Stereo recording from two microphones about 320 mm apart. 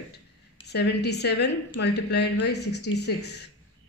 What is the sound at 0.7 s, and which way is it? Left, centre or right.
Speech, left.